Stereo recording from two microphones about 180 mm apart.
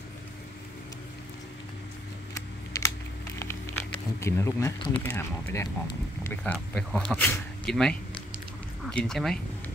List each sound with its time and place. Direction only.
2.3 s computer keyboard: 15° left (ahead or behind)
4.2 s speech: 15° left (ahead or behind)